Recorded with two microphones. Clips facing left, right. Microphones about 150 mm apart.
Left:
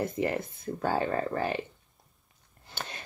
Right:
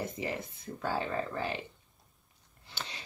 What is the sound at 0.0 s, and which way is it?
Speech, 55° left (ahead or behind).